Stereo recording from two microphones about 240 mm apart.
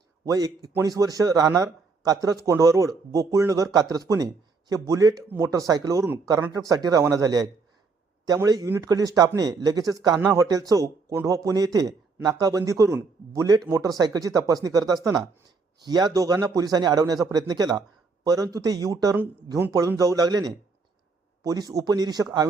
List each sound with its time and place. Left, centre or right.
0.3 s speech: centre